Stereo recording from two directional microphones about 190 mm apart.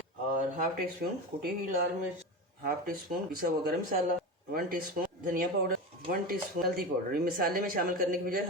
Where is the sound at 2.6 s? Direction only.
50° right (ahead or behind).